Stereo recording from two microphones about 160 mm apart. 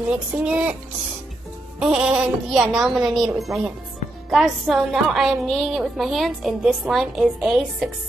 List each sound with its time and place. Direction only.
0.1 s speech: 5° right (ahead or behind)
1.8 s a woman's voice: 5° right (ahead or behind)